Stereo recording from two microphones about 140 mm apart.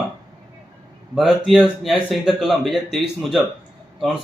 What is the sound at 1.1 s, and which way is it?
Speech, 5° right (ahead or behind).